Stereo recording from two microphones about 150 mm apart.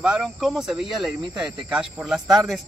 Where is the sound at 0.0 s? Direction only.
5° right (ahead or behind).